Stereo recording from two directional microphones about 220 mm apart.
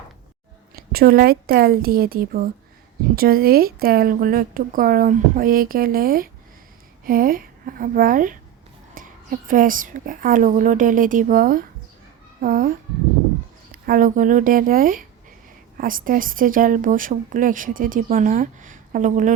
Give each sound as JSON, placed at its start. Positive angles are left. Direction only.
{"t": 0.8, "sound": "a woman's voice", "side_deg": -45}
{"t": 13.8, "sound": "speech", "side_deg": -40}